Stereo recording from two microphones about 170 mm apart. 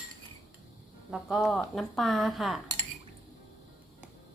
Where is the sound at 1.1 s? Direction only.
Centre (ahead or behind).